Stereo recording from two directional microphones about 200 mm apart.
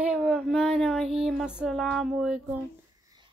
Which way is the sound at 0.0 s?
5° right (ahead or behind).